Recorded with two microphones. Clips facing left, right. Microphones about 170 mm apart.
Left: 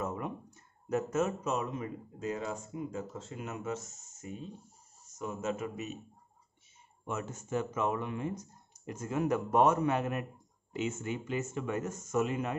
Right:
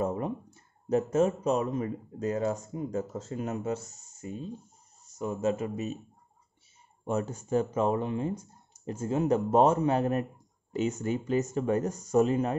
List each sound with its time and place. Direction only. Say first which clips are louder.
0.0 s speech: right 6 dB; 30° right (ahead or behind)
7.1 s speech: right 7 dB; 35° right (ahead or behind)